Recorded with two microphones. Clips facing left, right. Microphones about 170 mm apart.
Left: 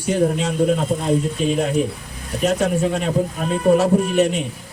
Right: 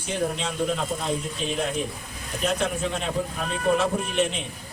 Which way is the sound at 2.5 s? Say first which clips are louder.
Left 7 dB; 45° left (ahead or behind).